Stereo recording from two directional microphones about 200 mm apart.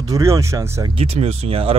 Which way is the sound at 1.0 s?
30° right (ahead or behind).